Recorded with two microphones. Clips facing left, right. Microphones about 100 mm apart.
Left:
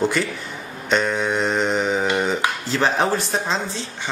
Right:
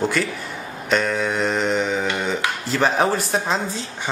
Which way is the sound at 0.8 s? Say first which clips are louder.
Even; centre (ahead or behind).